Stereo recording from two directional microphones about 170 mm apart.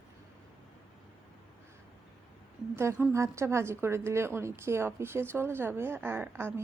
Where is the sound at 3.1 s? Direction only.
15° right (ahead or behind).